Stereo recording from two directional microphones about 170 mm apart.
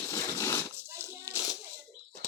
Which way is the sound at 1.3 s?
20° left (ahead or behind).